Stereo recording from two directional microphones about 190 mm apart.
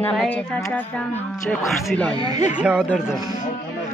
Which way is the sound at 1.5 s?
5° left (ahead or behind).